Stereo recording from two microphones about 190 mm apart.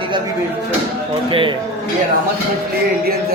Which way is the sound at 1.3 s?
25° right (ahead or behind).